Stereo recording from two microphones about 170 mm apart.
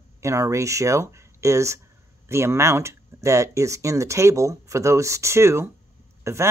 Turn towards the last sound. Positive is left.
turn(degrees=-15)  # may be behind; listen again after turning